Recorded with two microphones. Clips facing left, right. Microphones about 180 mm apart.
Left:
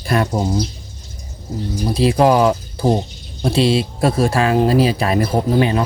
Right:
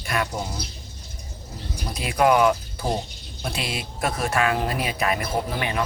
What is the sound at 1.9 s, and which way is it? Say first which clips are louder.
Speech: left 6 dB; 30° left (ahead or behind).